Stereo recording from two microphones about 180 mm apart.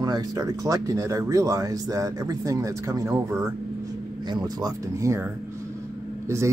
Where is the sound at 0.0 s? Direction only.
20° right (ahead or behind).